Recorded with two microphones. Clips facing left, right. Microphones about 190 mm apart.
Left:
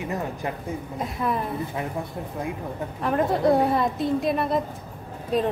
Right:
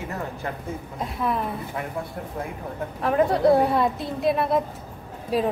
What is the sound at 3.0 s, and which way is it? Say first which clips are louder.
A woman's voice: right 2 dB; centre (ahead or behind).